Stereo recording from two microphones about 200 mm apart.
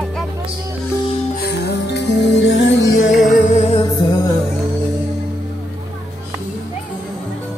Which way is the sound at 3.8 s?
20° left (ahead or behind).